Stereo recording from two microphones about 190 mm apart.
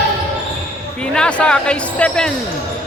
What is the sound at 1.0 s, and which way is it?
Speech, 5° left (ahead or behind).